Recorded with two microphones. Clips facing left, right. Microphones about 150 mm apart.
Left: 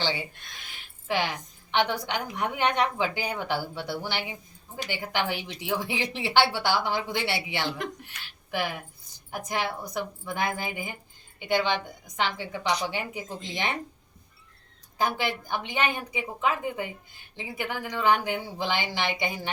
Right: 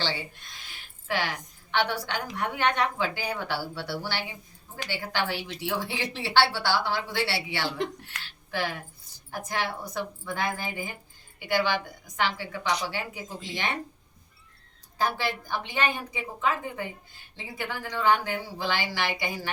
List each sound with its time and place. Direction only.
0.0 s a woman's voice: 15° left (ahead or behind)
14.9 s a woman's voice: 15° left (ahead or behind)